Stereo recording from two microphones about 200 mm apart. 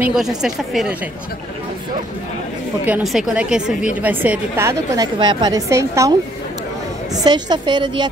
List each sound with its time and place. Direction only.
0.0 s a woman's voice: 5° right (ahead or behind)
2.9 s a woman's voice: centre (ahead or behind)
7.2 s a woman's voice: 20° right (ahead or behind)